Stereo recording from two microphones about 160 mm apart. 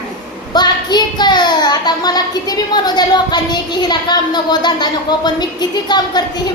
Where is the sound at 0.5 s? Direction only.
25° left (ahead or behind).